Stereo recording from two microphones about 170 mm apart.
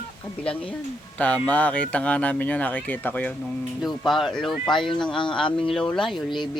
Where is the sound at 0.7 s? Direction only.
10° left (ahead or behind).